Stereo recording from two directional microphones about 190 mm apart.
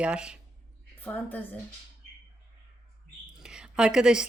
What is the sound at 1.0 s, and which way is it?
Speech, 10° left (ahead or behind).